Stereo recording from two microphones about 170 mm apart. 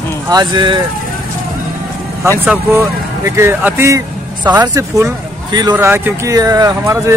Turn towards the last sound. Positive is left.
turn(degrees=-20)  # may be behind; listen again after turning